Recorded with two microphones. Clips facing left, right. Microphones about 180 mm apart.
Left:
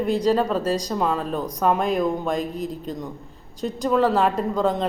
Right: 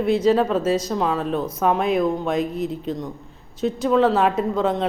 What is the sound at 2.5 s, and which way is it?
Speech, 40° left (ahead or behind).